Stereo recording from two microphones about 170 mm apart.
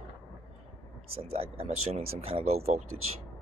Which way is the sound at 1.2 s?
35° right (ahead or behind).